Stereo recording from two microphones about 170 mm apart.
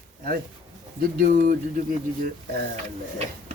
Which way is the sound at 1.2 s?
50° right (ahead or behind).